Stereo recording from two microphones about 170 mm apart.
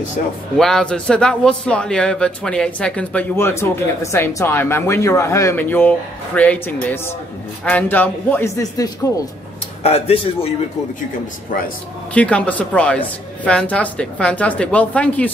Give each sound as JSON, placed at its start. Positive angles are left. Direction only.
{"t": 0.6, "sound": "a man's voice", "side_deg": 5}
{"t": 9.8, "sound": "speech", "side_deg": 35}
{"t": 12.1, "sound": "a man's voice", "side_deg": 5}